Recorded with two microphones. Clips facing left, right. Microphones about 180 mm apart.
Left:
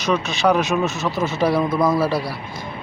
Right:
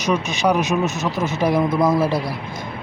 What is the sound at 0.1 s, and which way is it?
Speech, 15° right (ahead or behind).